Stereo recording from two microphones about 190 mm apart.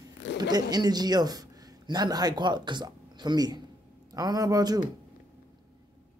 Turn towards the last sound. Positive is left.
turn(degrees=-20)  # may be behind; listen again after turning